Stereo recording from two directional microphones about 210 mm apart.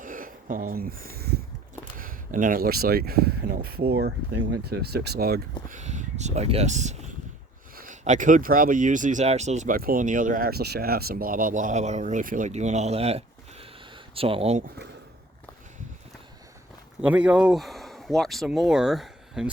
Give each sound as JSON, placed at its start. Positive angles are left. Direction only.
{"t": 0.0, "sound": "speech", "side_deg": -40}
{"t": 5.6, "sound": "speech", "side_deg": -35}
{"t": 17.0, "sound": "speech", "side_deg": -5}